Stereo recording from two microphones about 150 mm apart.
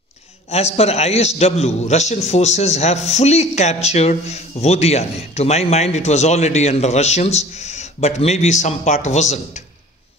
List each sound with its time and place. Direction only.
0.5 s a man's voice: 45° left (ahead or behind)